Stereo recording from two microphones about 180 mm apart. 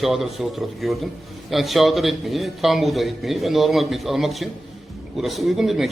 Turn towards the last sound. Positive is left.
turn(degrees=0)  # may be behind; listen again after turning